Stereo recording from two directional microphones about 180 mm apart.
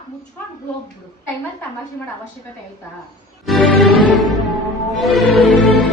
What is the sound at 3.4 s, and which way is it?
Music, centre (ahead or behind).